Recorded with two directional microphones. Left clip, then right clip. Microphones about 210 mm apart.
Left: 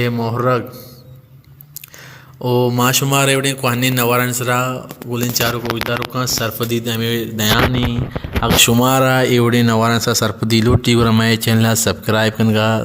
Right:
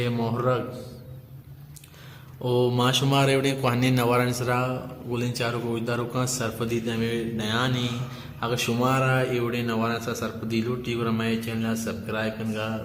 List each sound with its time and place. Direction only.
0.0 s speech: 25° left (ahead or behind)
2.4 s speech: 30° left (ahead or behind)
8.8 s a man's voice: 45° left (ahead or behind)